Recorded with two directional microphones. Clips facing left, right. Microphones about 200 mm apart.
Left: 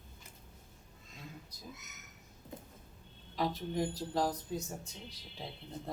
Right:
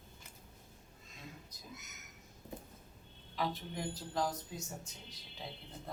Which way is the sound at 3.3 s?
40° left (ahead or behind).